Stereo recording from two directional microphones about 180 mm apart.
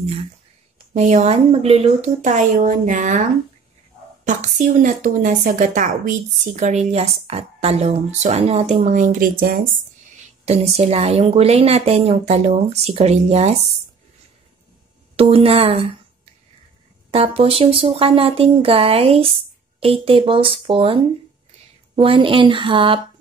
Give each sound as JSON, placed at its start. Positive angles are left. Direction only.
{"t": 0.9, "sound": "a woman's voice", "side_deg": -40}
{"t": 4.2, "sound": "a woman's voice", "side_deg": -45}
{"t": 10.4, "sound": "a woman's voice", "side_deg": -35}
{"t": 15.1, "sound": "a woman's voice", "side_deg": -30}
{"t": 17.1, "sound": "a woman's voice", "side_deg": -35}